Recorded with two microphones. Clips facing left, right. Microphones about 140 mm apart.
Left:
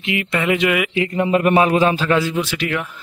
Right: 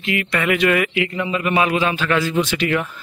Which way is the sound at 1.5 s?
40° left (ahead or behind).